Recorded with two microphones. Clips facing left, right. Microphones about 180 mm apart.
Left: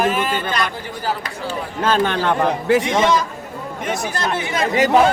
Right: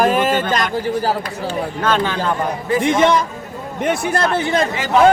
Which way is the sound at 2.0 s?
75° left (ahead or behind).